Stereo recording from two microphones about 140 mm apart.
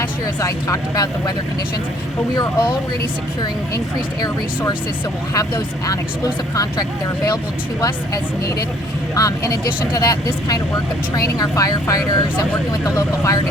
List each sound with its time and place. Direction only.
0.0 s speech: 25° left (ahead or behind)
2.3 s speech: 30° left (ahead or behind)
5.3 s speech: 25° left (ahead or behind)